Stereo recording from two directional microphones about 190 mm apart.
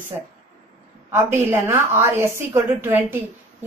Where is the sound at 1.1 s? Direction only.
15° right (ahead or behind).